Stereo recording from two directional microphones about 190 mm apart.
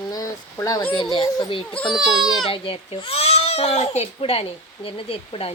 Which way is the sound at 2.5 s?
30° left (ahead or behind).